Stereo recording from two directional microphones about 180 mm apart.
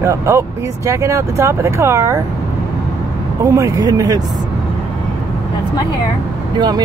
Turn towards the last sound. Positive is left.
turn(degrees=-25)  # may be behind; listen again after turning